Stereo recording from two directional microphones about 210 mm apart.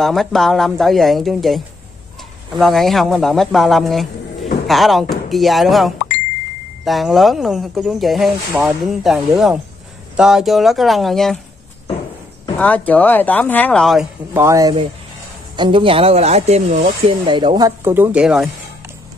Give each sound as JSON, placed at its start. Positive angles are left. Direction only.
{"t": 0.0, "sound": "speech", "side_deg": 0}
{"t": 12.5, "sound": "speech", "side_deg": 5}
{"t": 14.3, "sound": "speech", "side_deg": -15}